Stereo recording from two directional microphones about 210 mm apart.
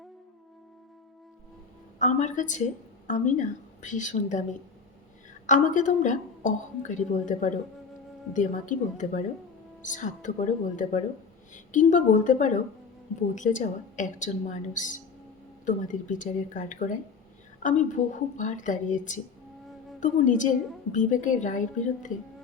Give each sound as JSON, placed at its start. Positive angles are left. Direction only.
{"t": 2.0, "sound": "a woman's voice", "side_deg": 35}
{"t": 5.5, "sound": "a woman's voice", "side_deg": 35}